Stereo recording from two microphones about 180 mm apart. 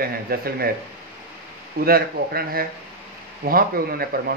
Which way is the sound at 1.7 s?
55° right (ahead or behind).